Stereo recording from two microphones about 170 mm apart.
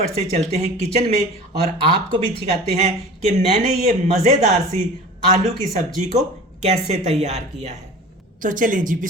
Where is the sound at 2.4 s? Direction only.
40° right (ahead or behind).